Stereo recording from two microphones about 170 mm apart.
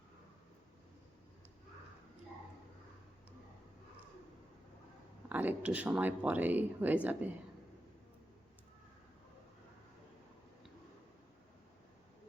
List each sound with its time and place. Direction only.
5.3 s speech: 10° right (ahead or behind)